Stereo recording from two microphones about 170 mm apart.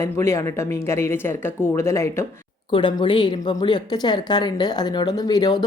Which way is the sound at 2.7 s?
30° left (ahead or behind).